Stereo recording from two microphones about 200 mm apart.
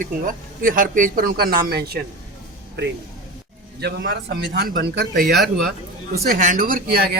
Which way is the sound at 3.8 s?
65° right (ahead or behind).